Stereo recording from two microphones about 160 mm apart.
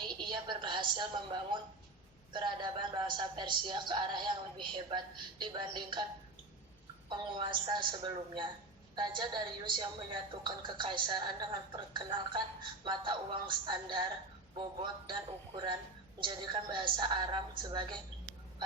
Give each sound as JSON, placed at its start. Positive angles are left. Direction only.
{"t": 0.1, "sound": "a sound", "side_deg": -30}
{"t": 2.3, "sound": "speech", "side_deg": -30}
{"t": 7.1, "sound": "a woman's voice", "side_deg": -30}